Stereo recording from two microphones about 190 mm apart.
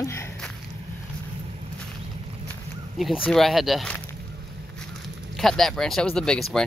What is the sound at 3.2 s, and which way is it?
Speech, centre (ahead or behind).